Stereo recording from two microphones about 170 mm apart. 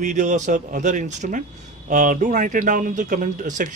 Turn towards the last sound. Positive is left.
turn(degrees=-50)  # may be behind; listen again after turning